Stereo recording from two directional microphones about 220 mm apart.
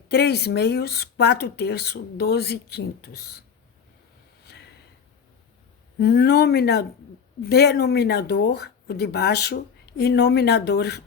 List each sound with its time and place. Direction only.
0.1 s speech: 50° left (ahead or behind)
6.0 s speech: 45° left (ahead or behind)